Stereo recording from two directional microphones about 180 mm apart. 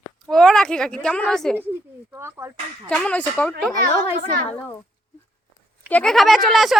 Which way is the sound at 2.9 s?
5° left (ahead or behind).